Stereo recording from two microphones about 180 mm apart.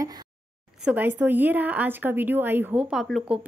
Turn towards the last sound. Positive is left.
turn(degrees=0)  # may be behind; listen again after turning